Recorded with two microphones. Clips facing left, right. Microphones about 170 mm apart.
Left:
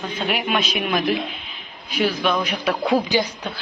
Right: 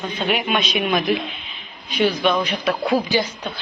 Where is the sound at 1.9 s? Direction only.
Centre (ahead or behind).